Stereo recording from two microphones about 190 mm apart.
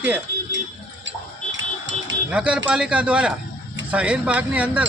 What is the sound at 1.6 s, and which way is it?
Music, 75° right (ahead or behind).